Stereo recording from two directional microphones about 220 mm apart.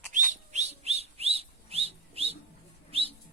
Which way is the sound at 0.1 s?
35° right (ahead or behind).